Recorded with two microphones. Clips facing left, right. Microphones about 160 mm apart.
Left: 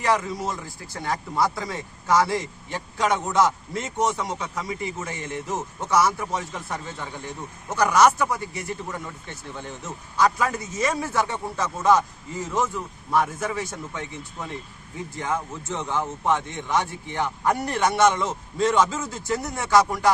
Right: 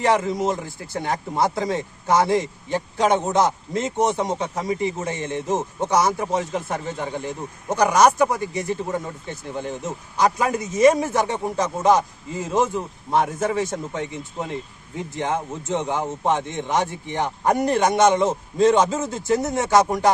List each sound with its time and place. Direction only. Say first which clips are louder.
0.0 s a man's voice: right 4 dB; 25° right (ahead or behind)